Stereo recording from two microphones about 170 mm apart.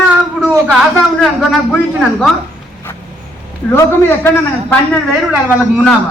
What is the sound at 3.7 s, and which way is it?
A man's voice, 15° left (ahead or behind).